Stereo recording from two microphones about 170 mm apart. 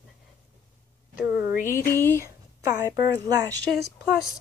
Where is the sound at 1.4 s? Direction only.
60° left (ahead or behind).